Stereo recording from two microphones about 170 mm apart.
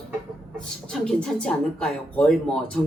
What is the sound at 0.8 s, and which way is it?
Speech, 5° left (ahead or behind).